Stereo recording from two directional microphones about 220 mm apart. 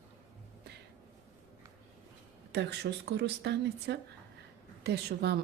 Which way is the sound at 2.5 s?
50° right (ahead or behind).